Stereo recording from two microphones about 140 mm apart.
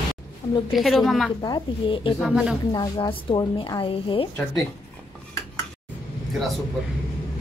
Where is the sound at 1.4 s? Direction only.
35° left (ahead or behind).